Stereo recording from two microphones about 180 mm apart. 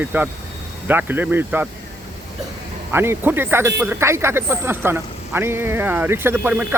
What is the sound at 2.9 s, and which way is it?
Speech, 15° right (ahead or behind).